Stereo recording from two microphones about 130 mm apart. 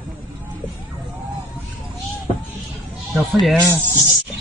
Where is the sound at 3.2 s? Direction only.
Centre (ahead or behind).